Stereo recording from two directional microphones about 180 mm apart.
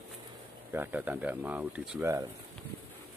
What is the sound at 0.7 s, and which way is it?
A man's voice, 10° right (ahead or behind).